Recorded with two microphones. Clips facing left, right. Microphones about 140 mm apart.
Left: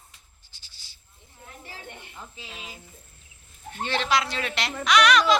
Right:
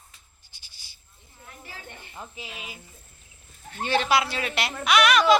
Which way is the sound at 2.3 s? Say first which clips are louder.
Right 2 dB; 10° right (ahead or behind).